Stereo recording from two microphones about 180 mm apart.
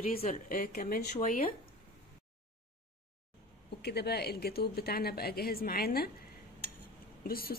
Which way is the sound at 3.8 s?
65° left (ahead or behind).